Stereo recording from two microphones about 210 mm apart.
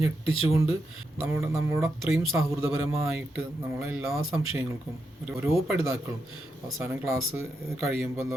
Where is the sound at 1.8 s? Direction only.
Centre (ahead or behind).